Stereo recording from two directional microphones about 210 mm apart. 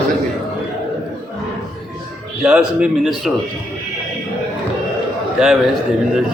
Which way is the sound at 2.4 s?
5° right (ahead or behind).